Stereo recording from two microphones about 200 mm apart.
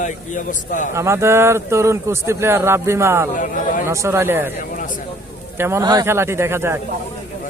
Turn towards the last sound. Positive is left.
turn(degrees=-10)  # may be behind; listen again after turning